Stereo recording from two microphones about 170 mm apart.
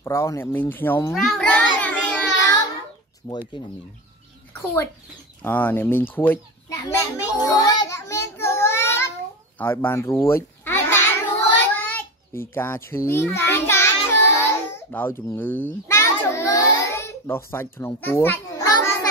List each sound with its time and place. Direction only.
0.0 s speech: 15° left (ahead or behind)
1.1 s child singing: centre (ahead or behind)
2.2 s child singing: 20° left (ahead or behind)
3.3 s speech: 25° left (ahead or behind)
5.4 s speech: 10° left (ahead or behind)
6.1 s children playing: 10° left (ahead or behind)
9.6 s speech: 15° left (ahead or behind)
10.3 s a sound: 15° left (ahead or behind)
17.5 s a child's voice: 15° left (ahead or behind)